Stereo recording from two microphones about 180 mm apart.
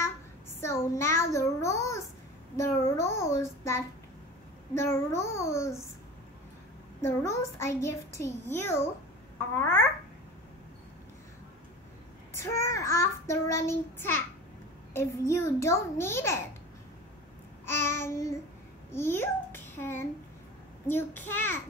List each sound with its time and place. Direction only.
0.0 s a child's voice: 15° left (ahead or behind)
7.0 s a child's voice: 15° left (ahead or behind)
12.4 s a child's voice: 15° left (ahead or behind)
17.6 s a child's voice: 15° left (ahead or behind)